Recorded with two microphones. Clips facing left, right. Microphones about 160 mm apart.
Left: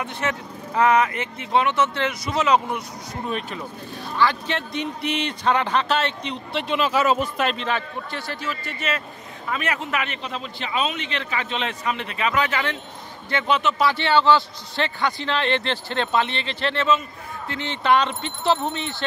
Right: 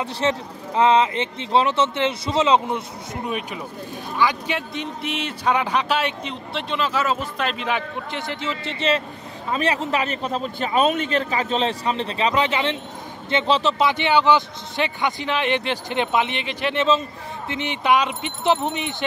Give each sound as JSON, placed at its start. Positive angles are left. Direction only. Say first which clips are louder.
{"t": 0.0, "sound": "speech", "louder": "right 4 dB", "side_deg": -30}
{"t": 3.3, "sound": "a man's voice", "louder": "even", "side_deg": -10}
{"t": 4.7, "sound": "a man's voice", "louder": "left 2 dB", "side_deg": 0}
{"t": 6.5, "sound": "speech", "louder": "left 2 dB", "side_deg": 10}
{"t": 7.5, "sound": "a man's voice", "louder": "right 1 dB", "side_deg": -15}
{"t": 13.8, "sound": "a man's voice", "louder": "left 1 dB", "side_deg": -15}